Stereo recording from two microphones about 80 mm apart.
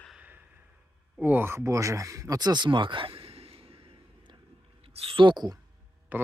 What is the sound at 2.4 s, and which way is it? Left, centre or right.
Speech, right.